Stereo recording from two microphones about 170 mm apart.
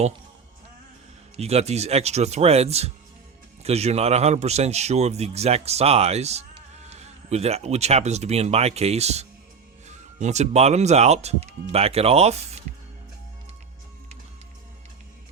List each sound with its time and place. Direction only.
1.4 s a man's voice: 40° right (ahead or behind)